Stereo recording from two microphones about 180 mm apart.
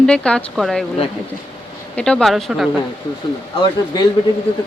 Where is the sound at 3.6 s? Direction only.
20° left (ahead or behind).